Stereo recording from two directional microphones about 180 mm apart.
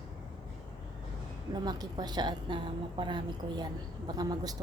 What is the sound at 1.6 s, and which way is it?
A woman's voice, 20° right (ahead or behind).